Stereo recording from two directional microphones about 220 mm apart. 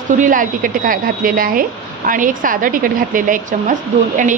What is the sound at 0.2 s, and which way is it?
A woman's voice, 35° right (ahead or behind).